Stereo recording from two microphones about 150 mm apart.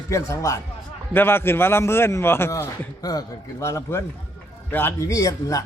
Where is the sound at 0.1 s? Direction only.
20° left (ahead or behind).